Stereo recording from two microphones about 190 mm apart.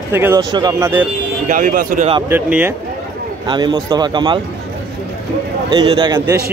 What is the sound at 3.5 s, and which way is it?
Speech, 25° right (ahead or behind).